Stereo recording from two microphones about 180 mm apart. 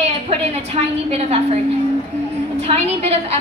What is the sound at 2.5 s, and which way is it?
Speech, 35° right (ahead or behind).